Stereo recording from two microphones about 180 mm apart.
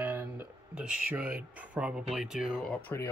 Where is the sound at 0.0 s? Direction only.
10° right (ahead or behind).